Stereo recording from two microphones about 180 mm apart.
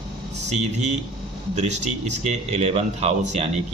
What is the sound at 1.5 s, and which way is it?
Speech, 40° right (ahead or behind).